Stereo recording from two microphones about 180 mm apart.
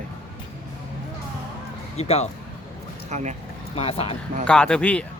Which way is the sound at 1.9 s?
35° left (ahead or behind).